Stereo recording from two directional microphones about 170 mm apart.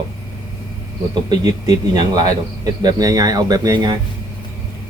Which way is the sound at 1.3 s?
25° right (ahead or behind).